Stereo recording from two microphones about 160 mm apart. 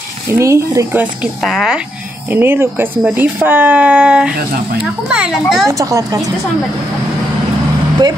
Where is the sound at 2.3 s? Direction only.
15° right (ahead or behind).